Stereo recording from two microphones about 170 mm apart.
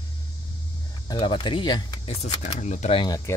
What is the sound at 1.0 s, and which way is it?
Speech, 25° left (ahead or behind).